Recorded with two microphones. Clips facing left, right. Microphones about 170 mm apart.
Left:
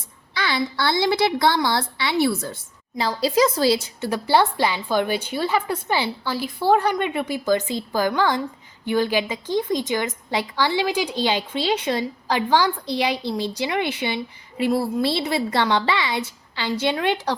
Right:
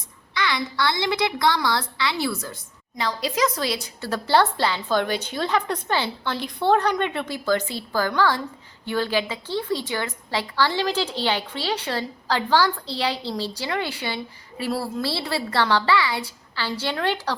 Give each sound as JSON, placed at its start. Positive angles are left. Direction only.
{"t": 0.3, "sound": "a woman's voice", "side_deg": 30}
{"t": 4.1, "sound": "a woman's voice", "side_deg": 15}